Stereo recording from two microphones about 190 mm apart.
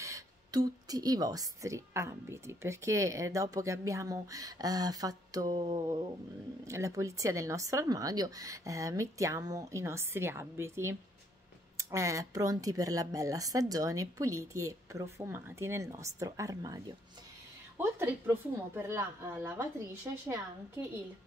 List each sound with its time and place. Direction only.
0.0 s speech: 20° right (ahead or behind)